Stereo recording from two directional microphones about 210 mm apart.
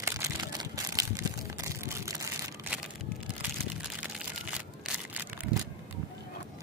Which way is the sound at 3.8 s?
5° right (ahead or behind).